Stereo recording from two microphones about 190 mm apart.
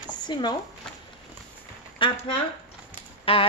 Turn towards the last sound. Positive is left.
turn(degrees=30)  # may be behind; listen again after turning